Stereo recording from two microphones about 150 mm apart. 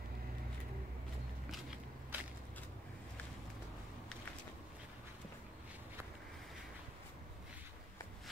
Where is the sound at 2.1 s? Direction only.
10° right (ahead or behind).